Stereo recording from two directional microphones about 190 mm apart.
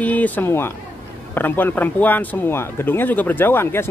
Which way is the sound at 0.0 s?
10° left (ahead or behind).